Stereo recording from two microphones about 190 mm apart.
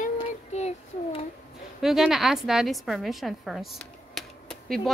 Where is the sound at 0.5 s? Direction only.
35° left (ahead or behind).